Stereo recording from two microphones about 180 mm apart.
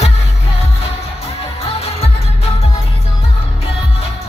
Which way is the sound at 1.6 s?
35° left (ahead or behind).